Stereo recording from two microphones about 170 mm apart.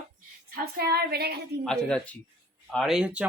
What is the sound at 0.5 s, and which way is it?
Female singing, 65° right (ahead or behind).